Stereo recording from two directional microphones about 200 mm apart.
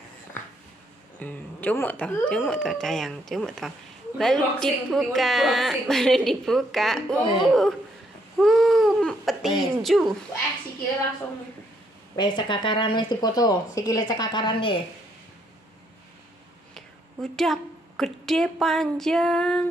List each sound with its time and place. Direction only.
1.2 s a woman's voice: 10° left (ahead or behind)
8.4 s baby cry: centre (ahead or behind)
9.9 s a woman's voice: centre (ahead or behind)
12.2 s speech: 25° left (ahead or behind)
16.7 s a woman's voice: centre (ahead or behind)